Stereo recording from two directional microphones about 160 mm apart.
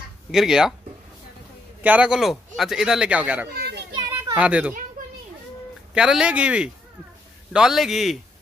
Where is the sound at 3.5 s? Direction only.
80° right.